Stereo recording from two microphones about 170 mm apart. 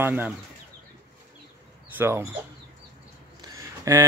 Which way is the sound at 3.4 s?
15° right (ahead or behind).